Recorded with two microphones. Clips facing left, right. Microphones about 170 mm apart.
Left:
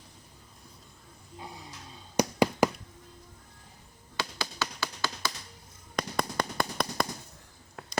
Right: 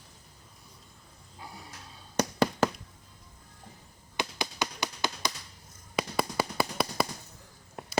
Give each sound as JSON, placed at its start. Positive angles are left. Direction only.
{"t": 2.1, "sound": "tap", "side_deg": 10}
{"t": 4.2, "sound": "tap", "side_deg": -15}
{"t": 6.0, "sound": "tap", "side_deg": -5}